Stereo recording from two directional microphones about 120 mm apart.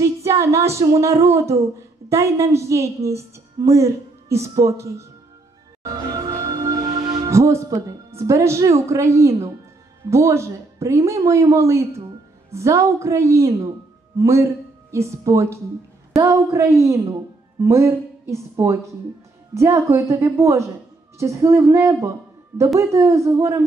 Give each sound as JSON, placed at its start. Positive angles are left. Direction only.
{"t": 0.0, "sound": "a sound", "side_deg": -25}
{"t": 0.7, "sound": "a woman's voice", "side_deg": -25}
{"t": 5.9, "sound": "music", "side_deg": -30}
{"t": 10.0, "sound": "a woman's voice", "side_deg": -25}